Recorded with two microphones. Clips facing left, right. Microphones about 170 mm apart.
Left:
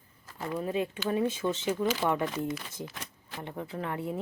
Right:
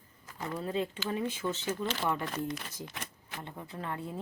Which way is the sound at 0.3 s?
10° left (ahead or behind).